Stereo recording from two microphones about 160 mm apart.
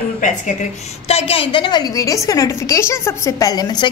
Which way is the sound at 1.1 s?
35° left (ahead or behind).